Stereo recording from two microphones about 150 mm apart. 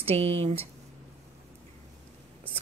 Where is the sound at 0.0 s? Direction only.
45° right (ahead or behind).